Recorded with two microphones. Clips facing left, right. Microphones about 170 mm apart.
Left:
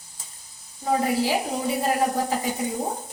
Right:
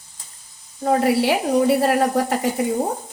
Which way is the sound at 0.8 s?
75° right (ahead or behind).